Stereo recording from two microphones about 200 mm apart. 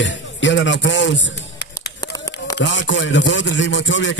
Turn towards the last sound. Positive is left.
turn(degrees=65)  # may be behind; listen again after turning